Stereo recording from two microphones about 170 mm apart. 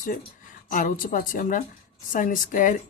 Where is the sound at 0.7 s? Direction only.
55° left (ahead or behind).